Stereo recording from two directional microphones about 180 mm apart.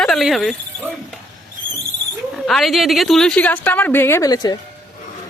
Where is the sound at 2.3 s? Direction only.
Centre (ahead or behind); by 4.5 s 20° left (ahead or behind).